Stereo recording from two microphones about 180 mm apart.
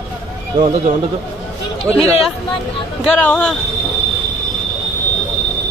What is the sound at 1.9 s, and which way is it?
Speech, 15° right (ahead or behind).